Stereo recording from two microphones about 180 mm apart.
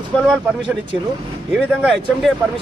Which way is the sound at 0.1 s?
Centre (ahead or behind).